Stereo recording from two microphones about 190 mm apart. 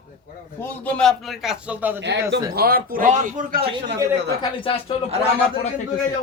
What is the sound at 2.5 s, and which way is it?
A man's voice, 50° right (ahead or behind).